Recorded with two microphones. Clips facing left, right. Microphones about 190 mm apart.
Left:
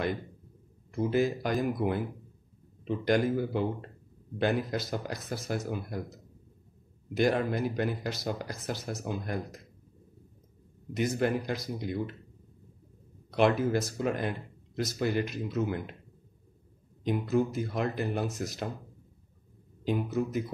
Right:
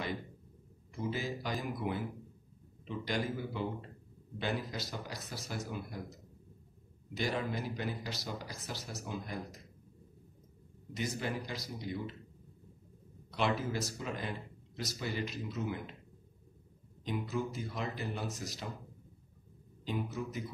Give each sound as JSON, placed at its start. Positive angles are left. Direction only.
{"t": 0.9, "sound": "speech", "side_deg": 55}
{"t": 7.2, "sound": "speech", "side_deg": 55}
{"t": 11.0, "sound": "speech", "side_deg": 55}
{"t": 13.3, "sound": "speech", "side_deg": 55}
{"t": 17.0, "sound": "speech", "side_deg": 55}
{"t": 19.8, "sound": "speech", "side_deg": 55}